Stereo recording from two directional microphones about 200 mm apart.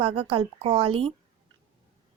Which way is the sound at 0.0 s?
25° right (ahead or behind).